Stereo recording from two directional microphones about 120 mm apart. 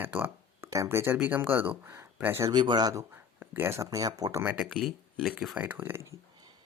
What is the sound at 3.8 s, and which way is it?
Speech, 30° right (ahead or behind).